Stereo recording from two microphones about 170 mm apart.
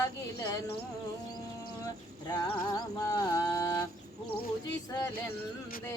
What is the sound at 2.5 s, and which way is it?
Music, 20° left (ahead or behind).